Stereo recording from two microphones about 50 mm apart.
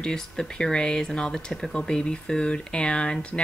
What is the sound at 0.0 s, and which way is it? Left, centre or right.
Speech, centre.